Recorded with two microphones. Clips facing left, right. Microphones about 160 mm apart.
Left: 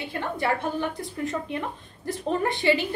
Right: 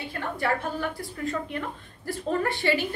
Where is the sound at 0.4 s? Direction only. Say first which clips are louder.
Left 1 dB; 20° left (ahead or behind).